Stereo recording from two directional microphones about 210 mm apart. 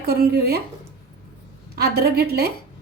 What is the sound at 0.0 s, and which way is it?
Speech, 45° right (ahead or behind).